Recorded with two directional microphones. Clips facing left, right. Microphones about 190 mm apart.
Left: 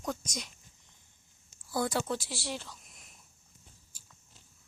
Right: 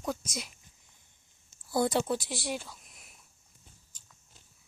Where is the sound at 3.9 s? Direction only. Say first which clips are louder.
Left 2 dB; 10° left (ahead or behind).